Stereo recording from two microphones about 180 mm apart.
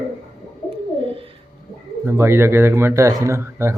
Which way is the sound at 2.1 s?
15° right (ahead or behind).